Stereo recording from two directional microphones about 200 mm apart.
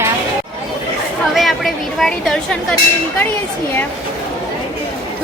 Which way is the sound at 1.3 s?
Centre (ahead or behind).